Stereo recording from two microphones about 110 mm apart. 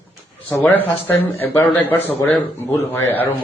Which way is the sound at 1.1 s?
20° left (ahead or behind).